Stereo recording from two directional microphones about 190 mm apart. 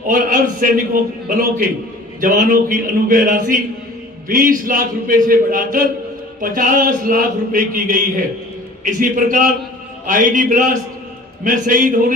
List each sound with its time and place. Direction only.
0.1 s a man's voice: 45° right (ahead or behind)